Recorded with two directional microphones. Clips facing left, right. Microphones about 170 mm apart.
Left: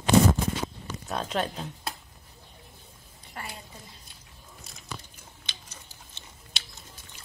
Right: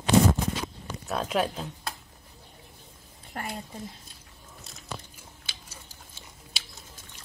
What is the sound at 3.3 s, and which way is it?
Speech, 50° right (ahead or behind).